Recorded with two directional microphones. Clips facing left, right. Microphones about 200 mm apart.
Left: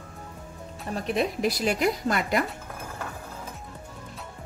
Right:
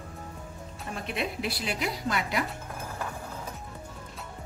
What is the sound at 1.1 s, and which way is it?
A woman's voice, 40° left (ahead or behind).